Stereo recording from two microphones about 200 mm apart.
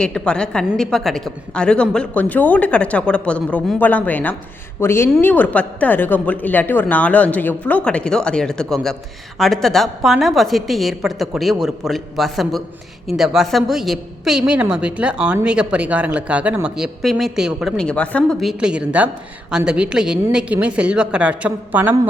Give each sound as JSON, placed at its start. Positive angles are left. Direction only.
{"t": 0.0, "sound": "a woman's voice", "side_deg": 5}